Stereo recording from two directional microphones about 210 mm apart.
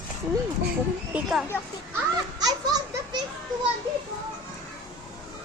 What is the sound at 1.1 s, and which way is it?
Speech, 5° right (ahead or behind).